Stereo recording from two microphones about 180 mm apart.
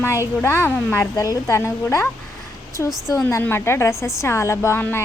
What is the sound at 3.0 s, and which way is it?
A woman's voice, 15° left (ahead or behind).